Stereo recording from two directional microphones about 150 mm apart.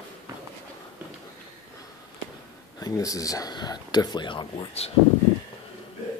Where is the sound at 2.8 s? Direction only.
25° left (ahead or behind).